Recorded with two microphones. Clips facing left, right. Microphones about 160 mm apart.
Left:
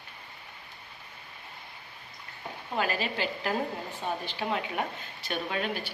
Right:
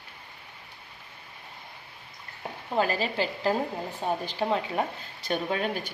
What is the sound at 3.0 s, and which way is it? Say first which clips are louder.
Speech: right 3 dB; 35° right (ahead or behind).